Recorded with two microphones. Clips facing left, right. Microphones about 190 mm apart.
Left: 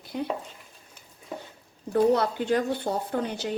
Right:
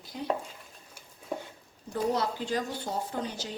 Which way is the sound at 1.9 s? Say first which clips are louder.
Left 7 dB; 60° left (ahead or behind).